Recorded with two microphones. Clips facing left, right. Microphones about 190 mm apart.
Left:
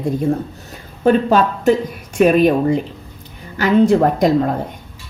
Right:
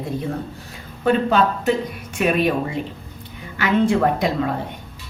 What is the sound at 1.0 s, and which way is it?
A woman's voice, 45° left (ahead or behind).